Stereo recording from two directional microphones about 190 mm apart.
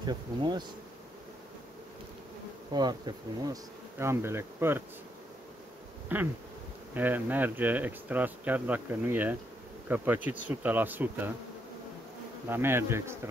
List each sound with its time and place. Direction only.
0.0 s speech: 25° right (ahead or behind)
2.7 s speech: 20° right (ahead or behind)
6.1 s speech: 10° right (ahead or behind)
12.4 s speech: 10° right (ahead or behind)